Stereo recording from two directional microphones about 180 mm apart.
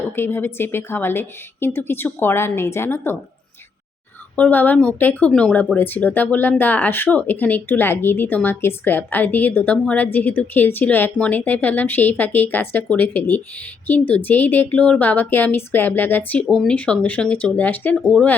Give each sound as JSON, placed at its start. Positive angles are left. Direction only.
{"t": 0.2, "sound": "speech", "side_deg": 10}
{"t": 4.4, "sound": "speech", "side_deg": 10}